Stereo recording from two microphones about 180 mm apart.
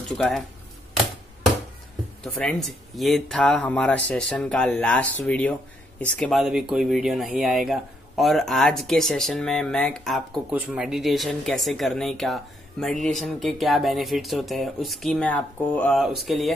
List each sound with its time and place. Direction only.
0.1 s speech: centre (ahead or behind)
2.2 s speech: centre (ahead or behind)